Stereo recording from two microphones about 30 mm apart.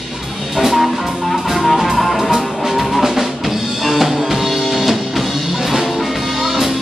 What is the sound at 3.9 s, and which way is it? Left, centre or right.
Music, centre.